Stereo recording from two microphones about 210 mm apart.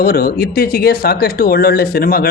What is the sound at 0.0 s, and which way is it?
Speech, 45° left (ahead or behind).